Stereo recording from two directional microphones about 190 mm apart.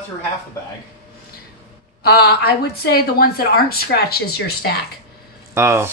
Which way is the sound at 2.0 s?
55° left (ahead or behind).